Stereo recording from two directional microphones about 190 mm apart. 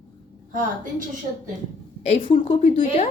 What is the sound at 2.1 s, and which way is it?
A woman's voice, 30° left (ahead or behind).